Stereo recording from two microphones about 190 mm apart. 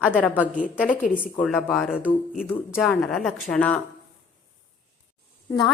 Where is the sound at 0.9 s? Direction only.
45° left (ahead or behind).